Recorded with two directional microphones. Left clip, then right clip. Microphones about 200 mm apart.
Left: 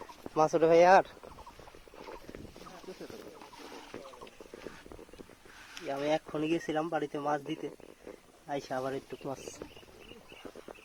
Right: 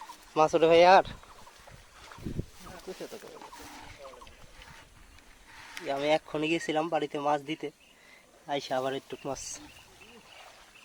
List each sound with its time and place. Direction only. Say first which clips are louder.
0.3 s speech: right 3 dB; centre (ahead or behind)
5.9 s speech: right 4 dB; centre (ahead or behind)